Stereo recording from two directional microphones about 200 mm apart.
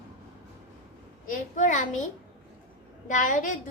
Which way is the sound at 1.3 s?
40° left (ahead or behind).